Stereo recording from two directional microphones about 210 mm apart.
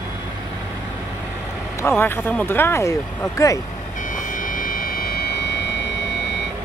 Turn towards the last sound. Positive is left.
turn(degrees=60)  # may be behind; listen again after turning